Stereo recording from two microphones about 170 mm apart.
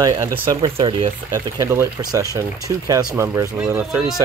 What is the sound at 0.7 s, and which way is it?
Speech, 30° right (ahead or behind).